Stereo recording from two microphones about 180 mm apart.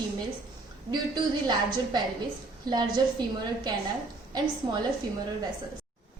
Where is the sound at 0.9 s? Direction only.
25° right (ahead or behind).